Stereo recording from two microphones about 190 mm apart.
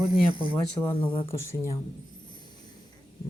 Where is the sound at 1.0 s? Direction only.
25° left (ahead or behind).